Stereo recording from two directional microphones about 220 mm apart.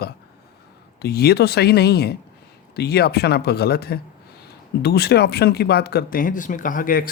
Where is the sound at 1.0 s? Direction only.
45° left (ahead or behind).